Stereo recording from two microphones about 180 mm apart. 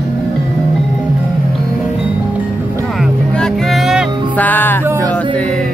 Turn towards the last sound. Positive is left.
turn(degrees=10)  # may be behind; listen again after turning